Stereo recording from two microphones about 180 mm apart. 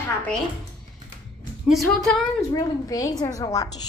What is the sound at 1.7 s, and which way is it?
Speech, centre (ahead or behind).